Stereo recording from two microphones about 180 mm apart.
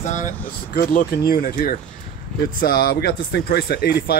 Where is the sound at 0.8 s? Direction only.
60° left (ahead or behind).